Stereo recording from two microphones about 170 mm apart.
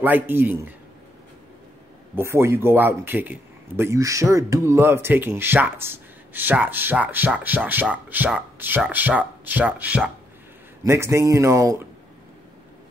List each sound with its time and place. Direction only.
0.0 s a man's voice: 10° right (ahead or behind)
2.1 s a man's voice: 15° right (ahead or behind)